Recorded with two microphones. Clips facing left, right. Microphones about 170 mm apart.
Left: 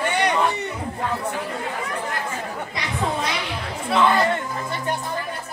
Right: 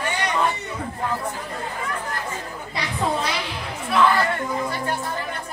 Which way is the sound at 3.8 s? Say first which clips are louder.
Even; 20° left (ahead or behind).